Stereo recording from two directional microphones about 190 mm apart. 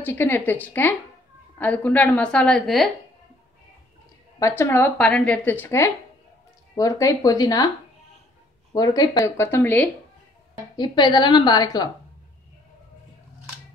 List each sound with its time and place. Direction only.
0.0 s a woman's voice: 10° left (ahead or behind)
4.4 s a woman's voice: 15° left (ahead or behind)
8.7 s a woman's voice: 20° left (ahead or behind)
10.8 s a woman's voice: 25° left (ahead or behind)